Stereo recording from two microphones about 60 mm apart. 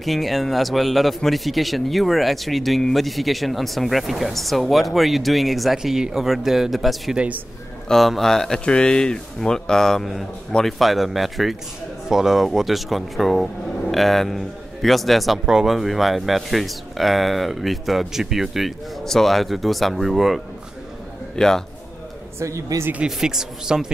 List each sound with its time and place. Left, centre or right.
0.0 s a man's voice: centre
7.2 s a man's voice: right
7.9 s a man's voice: centre
21.4 s speech: centre
22.4 s speech: right
23.0 s speech: centre